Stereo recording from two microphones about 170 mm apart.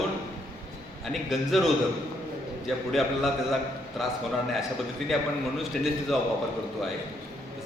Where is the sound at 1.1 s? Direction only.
Centre (ahead or behind).